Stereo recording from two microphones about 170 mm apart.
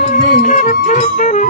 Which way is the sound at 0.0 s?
50° left (ahead or behind).